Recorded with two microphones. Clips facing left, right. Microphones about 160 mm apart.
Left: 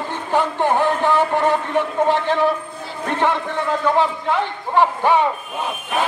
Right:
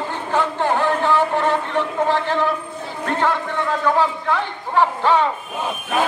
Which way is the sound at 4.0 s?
15° left (ahead or behind).